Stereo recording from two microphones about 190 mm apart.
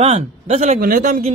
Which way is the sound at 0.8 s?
45° right (ahead or behind).